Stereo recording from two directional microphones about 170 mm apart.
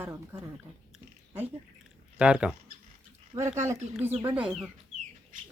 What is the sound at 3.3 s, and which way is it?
Speech, 20° right (ahead or behind).